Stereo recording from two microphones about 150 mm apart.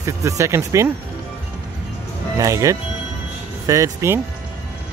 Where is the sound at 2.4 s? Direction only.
20° right (ahead or behind).